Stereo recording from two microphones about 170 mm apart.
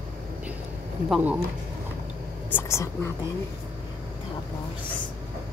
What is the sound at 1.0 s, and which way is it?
Speech, 5° right (ahead or behind).